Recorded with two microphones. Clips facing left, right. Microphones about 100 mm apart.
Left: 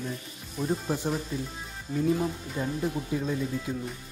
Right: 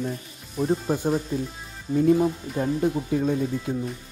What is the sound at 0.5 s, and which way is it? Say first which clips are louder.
Speech: right 5 dB; 20° right (ahead or behind).